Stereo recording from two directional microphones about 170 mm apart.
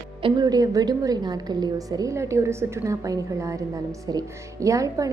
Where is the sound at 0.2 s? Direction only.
30° right (ahead or behind).